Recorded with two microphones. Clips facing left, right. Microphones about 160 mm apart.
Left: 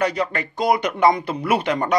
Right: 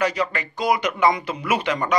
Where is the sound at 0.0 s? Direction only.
55° left (ahead or behind).